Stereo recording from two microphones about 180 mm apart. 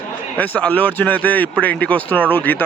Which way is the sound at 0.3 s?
10° left (ahead or behind).